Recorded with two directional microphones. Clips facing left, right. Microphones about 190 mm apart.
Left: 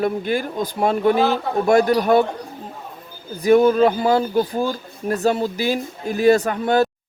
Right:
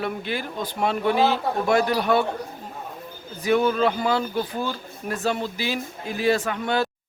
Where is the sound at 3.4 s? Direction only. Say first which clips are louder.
Left 7 dB; 40° left (ahead or behind).